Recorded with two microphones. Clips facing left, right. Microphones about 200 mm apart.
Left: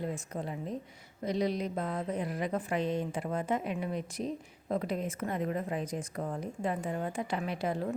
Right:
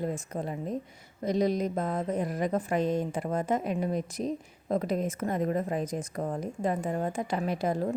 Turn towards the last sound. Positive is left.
turn(degrees=-40)  # may be behind; listen again after turning